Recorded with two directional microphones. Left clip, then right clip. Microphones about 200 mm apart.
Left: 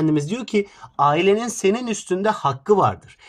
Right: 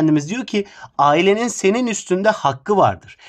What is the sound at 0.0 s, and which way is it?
Speech, 35° right (ahead or behind).